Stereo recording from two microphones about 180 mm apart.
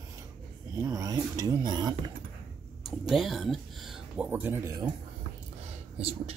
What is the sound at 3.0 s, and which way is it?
Speech, centre (ahead or behind).